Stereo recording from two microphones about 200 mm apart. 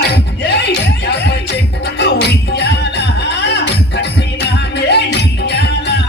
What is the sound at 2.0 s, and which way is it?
Music, 60° left (ahead or behind).